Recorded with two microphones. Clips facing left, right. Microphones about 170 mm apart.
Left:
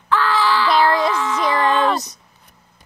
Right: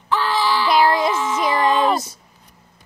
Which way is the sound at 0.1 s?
10° right (ahead or behind).